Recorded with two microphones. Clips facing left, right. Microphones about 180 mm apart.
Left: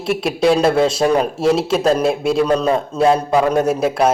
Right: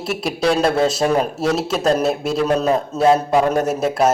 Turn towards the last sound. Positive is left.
turn(degrees=0)  # may be behind; listen again after turning